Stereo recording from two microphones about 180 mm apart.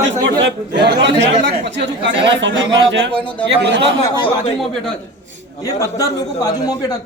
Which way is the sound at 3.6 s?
70° right (ahead or behind).